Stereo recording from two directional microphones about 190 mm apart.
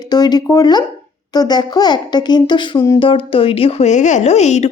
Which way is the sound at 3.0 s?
30° left (ahead or behind).